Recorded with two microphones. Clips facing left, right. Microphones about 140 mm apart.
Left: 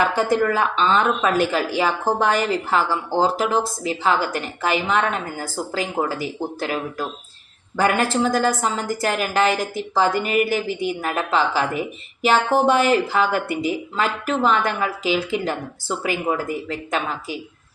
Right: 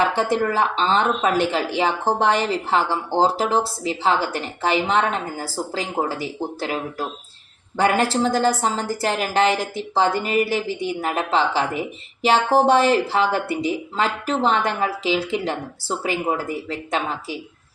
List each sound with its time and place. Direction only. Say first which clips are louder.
0.0 s a woman's voice: left 1 dB; 30° right (ahead or behind)